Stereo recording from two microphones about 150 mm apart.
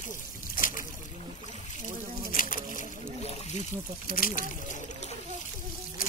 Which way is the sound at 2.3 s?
65° left (ahead or behind).